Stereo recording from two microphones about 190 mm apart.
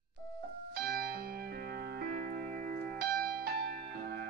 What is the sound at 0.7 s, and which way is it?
Music, 55° right (ahead or behind).